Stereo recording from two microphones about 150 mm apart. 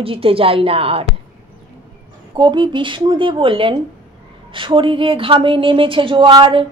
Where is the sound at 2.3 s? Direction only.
30° right (ahead or behind).